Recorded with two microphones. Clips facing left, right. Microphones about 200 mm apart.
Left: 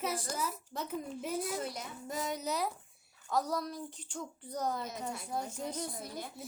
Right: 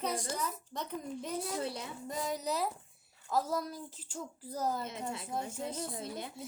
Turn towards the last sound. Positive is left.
turn(degrees=-25)  # may be behind; listen again after turning